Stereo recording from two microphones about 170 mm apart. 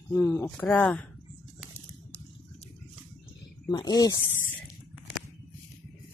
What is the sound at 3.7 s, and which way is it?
Speech, 25° left (ahead or behind).